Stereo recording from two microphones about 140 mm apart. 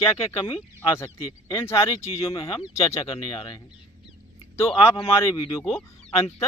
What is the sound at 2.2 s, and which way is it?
Speech, 40° left (ahead or behind).